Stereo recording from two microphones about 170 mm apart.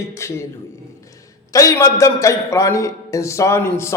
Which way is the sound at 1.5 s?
20° left (ahead or behind).